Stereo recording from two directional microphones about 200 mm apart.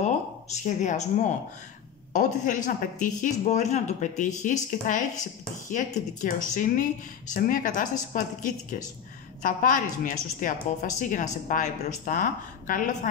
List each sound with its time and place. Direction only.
0.0 s speech: 35° left (ahead or behind)